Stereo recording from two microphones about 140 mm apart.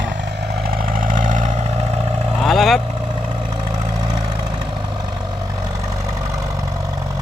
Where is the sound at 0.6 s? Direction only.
90° right; by 1.9 s 50° right (ahead or behind).